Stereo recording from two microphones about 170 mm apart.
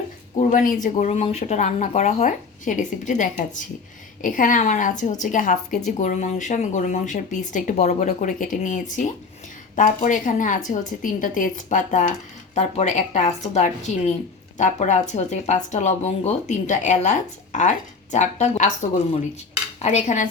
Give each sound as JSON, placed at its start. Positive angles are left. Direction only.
{"t": 0.3, "sound": "speech", "side_deg": 50}
{"t": 19.8, "sound": "cutlery", "side_deg": 40}